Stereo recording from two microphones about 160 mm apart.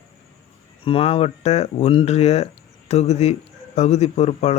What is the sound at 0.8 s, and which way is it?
Speech, 35° left (ahead or behind).